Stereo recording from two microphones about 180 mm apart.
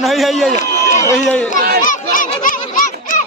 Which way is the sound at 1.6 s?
55° right (ahead or behind).